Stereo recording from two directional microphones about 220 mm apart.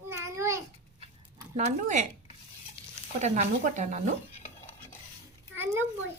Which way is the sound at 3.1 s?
30° right (ahead or behind).